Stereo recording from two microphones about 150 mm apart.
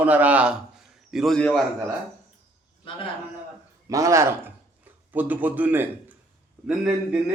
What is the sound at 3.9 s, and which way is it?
Speech, 20° right (ahead or behind).